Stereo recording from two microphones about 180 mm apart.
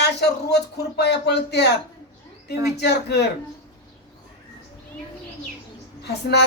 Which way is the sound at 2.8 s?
70° left (ahead or behind).